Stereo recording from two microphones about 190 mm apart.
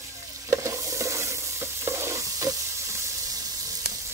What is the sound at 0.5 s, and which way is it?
Stir, 15° right (ahead or behind).